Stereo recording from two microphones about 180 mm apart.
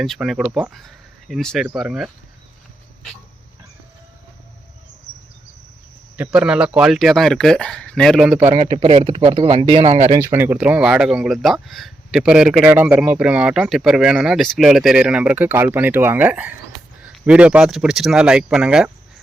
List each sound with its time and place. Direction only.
0.0 s speech: centre (ahead or behind)
6.1 s speech: 5° right (ahead or behind)
8.7 s speech: 30° right (ahead or behind)
10.1 s speech: 15° right (ahead or behind)